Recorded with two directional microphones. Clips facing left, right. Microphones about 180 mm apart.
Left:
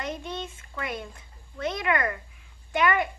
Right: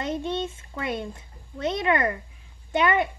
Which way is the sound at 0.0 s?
25° right (ahead or behind).